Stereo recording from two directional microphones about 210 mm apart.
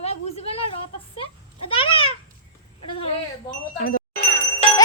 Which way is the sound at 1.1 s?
25° left (ahead or behind).